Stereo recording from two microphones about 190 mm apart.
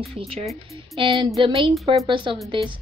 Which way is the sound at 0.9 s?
25° right (ahead or behind).